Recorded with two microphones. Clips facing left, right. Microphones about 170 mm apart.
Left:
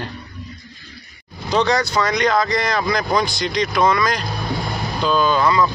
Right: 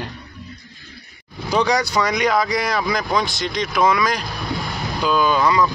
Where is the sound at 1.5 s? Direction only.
10° right (ahead or behind).